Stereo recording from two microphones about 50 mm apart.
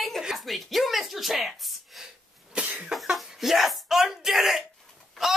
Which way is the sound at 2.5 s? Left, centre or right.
Right.